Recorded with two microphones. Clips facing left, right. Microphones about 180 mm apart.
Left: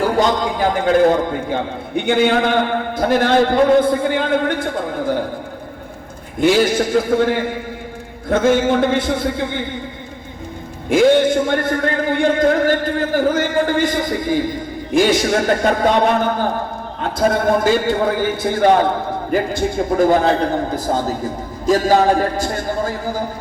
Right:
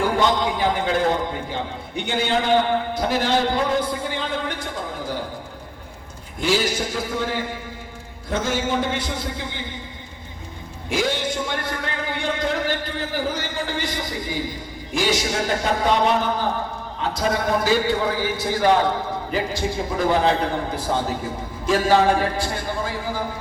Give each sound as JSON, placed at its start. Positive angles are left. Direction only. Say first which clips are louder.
{"t": 0.0, "sound": "a man's voice", "louder": "left 4 dB", "side_deg": 40}
{"t": 6.4, "sound": "a man's voice", "louder": "left 8 dB", "side_deg": 55}
{"t": 10.8, "sound": "a man's voice", "louder": "left 11 dB", "side_deg": 55}